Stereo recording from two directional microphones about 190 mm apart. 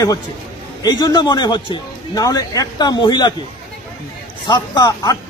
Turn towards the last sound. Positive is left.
turn(degrees=20)  # may be behind; listen again after turning